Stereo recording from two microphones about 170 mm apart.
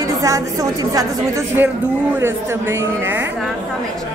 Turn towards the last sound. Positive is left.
turn(degrees=-15)  # may be behind; listen again after turning